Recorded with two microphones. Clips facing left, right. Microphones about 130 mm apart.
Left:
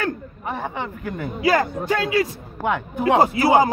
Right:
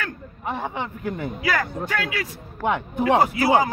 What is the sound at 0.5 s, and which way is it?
Speech, 15° right (ahead or behind).